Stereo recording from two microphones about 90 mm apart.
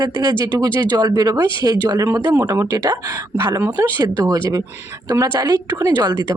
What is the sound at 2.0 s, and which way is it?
Speech, 35° right (ahead or behind).